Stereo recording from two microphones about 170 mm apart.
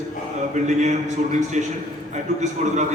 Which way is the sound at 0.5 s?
45° right (ahead or behind).